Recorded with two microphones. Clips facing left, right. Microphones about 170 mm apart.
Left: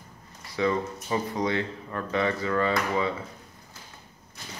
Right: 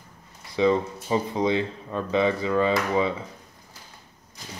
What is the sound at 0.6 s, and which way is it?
Speech, 20° right (ahead or behind).